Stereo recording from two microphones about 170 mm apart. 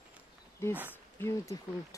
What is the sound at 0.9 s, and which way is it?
Speech, 15° left (ahead or behind).